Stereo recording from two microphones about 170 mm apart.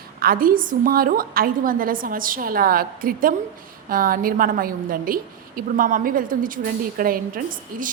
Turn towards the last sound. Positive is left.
turn(degrees=-55)  # may be behind; listen again after turning